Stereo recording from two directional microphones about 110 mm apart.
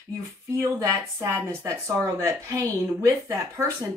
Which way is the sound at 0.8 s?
25° right (ahead or behind).